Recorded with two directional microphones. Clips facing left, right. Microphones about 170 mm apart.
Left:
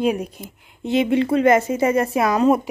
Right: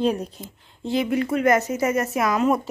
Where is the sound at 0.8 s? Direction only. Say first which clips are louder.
Left 4 dB; 25° left (ahead or behind).